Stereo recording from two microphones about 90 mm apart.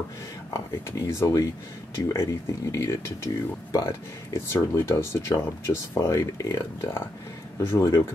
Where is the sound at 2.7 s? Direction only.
30° left (ahead or behind).